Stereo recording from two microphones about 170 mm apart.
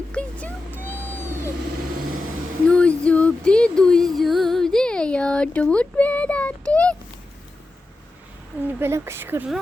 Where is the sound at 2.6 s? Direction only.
5° left (ahead or behind).